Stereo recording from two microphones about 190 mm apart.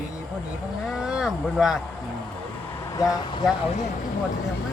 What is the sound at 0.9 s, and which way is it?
Speech, centre (ahead or behind).